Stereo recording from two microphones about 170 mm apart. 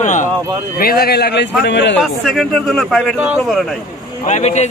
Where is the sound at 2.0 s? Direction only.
Centre (ahead or behind).